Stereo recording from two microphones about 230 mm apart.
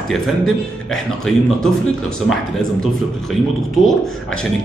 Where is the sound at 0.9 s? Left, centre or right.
Centre.